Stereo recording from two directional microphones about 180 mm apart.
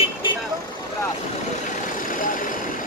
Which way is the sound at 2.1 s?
50° left (ahead or behind).